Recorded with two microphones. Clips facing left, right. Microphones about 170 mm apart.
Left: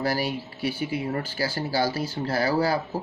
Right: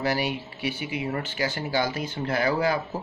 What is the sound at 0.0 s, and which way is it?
Speech, 40° left (ahead or behind).